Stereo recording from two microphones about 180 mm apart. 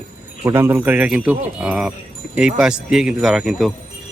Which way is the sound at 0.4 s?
15° right (ahead or behind).